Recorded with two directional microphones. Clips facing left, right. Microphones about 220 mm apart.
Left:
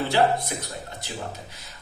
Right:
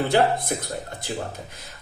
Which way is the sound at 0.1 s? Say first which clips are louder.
Right 2 dB; 50° right (ahead or behind).